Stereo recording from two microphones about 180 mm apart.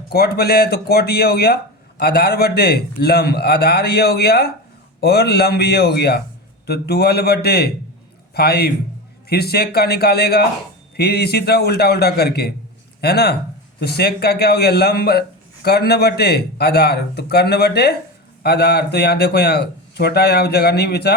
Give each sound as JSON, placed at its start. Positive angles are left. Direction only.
{"t": 0.1, "sound": "a man's voice", "side_deg": 60}